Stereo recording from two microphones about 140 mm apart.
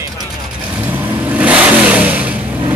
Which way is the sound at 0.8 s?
10° right (ahead or behind).